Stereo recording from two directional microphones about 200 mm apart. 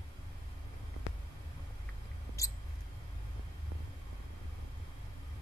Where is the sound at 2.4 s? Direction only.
15° left (ahead or behind).